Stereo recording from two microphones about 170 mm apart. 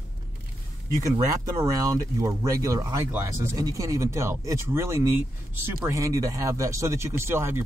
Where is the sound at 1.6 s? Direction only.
20° right (ahead or behind).